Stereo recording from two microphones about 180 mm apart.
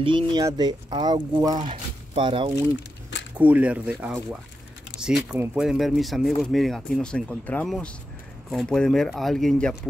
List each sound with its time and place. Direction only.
0.0 s speech: 25° right (ahead or behind)
3.3 s speech: 10° right (ahead or behind)
5.3 s speech: 5° right (ahead or behind)